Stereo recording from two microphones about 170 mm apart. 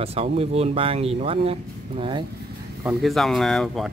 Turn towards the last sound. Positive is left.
turn(degrees=0)  # may be behind; listen again after turning